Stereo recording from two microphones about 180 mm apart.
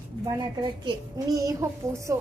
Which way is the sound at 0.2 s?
20° right (ahead or behind).